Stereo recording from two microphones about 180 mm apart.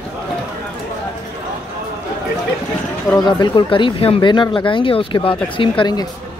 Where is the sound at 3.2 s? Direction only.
25° left (ahead or behind).